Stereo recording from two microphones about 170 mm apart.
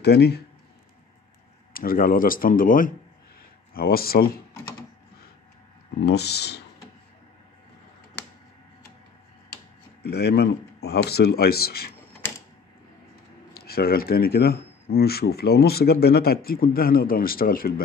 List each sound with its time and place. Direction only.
0.0 s speech: 75° left (ahead or behind)
1.7 s speech: 60° left (ahead or behind)
6.0 s speech: 75° left (ahead or behind)
10.0 s speech: 70° left (ahead or behind)
13.5 s speech: 65° left (ahead or behind)